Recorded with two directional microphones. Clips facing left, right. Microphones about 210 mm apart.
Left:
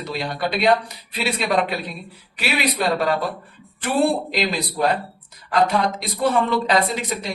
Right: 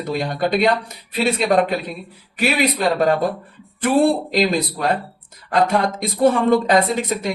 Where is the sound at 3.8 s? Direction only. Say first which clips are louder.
Right 4 dB; 45° right (ahead or behind).